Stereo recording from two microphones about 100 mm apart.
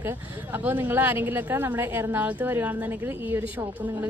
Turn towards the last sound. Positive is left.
turn(degrees=-20)  # may be behind; listen again after turning